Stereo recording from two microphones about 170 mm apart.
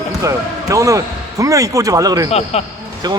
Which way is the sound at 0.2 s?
20° right (ahead or behind).